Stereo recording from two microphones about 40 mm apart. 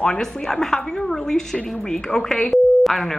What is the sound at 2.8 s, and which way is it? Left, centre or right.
Speech, centre.